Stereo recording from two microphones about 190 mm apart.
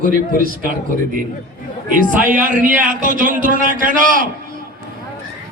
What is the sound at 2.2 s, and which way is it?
A man's voice, 45° right (ahead or behind).